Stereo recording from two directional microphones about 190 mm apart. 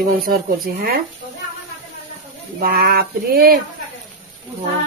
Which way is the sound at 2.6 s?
50° right (ahead or behind).